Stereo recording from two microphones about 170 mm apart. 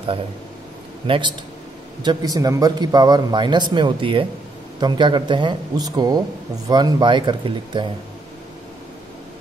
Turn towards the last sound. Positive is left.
turn(degrees=-25)  # may be behind; listen again after turning